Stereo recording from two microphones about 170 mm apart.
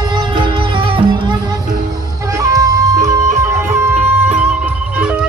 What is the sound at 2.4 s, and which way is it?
Music, 20° right (ahead or behind).